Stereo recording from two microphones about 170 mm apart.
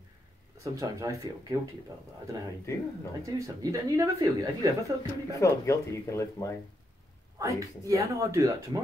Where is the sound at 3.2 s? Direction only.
20° right (ahead or behind).